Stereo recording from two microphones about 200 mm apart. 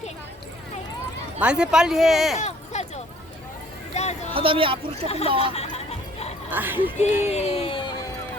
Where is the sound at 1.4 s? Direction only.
5° right (ahead or behind).